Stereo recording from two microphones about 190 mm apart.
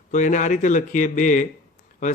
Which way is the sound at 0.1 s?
40° left (ahead or behind).